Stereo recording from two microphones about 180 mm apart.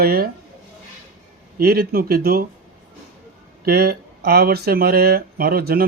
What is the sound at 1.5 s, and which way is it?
Speech, 60° right (ahead or behind).